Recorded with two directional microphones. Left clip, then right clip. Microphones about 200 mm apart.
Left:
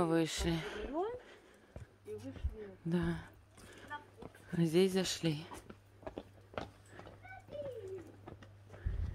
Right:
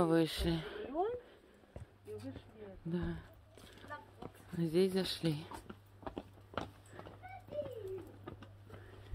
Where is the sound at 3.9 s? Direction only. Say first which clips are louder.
Left 2 dB; 50° right (ahead or behind).